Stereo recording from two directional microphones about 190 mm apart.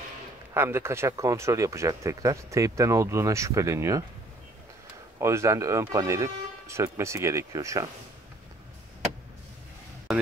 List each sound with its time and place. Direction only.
0.6 s speech: 15° right (ahead or behind)
5.2 s speech: 15° right (ahead or behind)